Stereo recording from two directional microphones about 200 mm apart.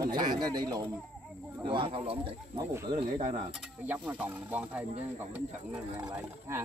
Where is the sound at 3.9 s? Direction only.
5° right (ahead or behind).